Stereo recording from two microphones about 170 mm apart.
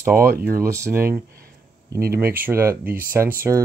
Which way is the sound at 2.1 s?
15° right (ahead or behind).